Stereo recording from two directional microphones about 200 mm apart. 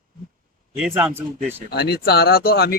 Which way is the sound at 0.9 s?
10° right (ahead or behind).